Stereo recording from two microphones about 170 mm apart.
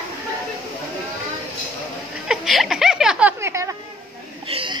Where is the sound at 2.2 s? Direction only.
Centre (ahead or behind).